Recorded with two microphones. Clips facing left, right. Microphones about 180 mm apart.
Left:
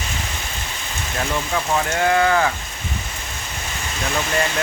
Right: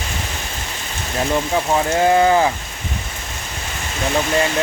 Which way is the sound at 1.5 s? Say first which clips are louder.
Right 3 dB; 25° right (ahead or behind).